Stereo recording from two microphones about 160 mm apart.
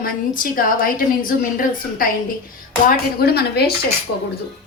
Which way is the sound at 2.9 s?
80° left.